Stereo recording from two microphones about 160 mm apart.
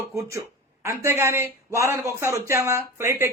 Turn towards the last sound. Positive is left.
turn(degrees=-15)  # may be behind; listen again after turning